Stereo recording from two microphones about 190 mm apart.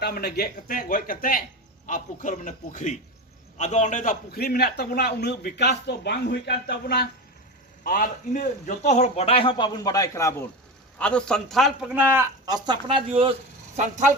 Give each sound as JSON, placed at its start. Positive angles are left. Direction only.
{"t": 0.0, "sound": "a man's voice", "side_deg": 55}
{"t": 7.9, "sound": "a man's voice", "side_deg": 45}
{"t": 10.9, "sound": "a man's voice", "side_deg": 5}
{"t": 12.0, "sound": "a man's voice", "side_deg": -15}
{"t": 13.7, "sound": "speech", "side_deg": -40}